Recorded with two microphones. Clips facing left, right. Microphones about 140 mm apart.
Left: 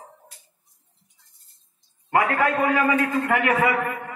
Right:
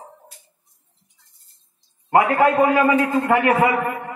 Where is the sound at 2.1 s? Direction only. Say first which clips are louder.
Right 5 dB; 25° right (ahead or behind).